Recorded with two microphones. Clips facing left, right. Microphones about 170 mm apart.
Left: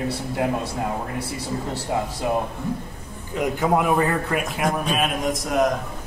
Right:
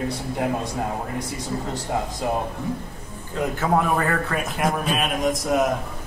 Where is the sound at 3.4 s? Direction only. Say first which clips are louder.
Left 1 dB; 15° left (ahead or behind).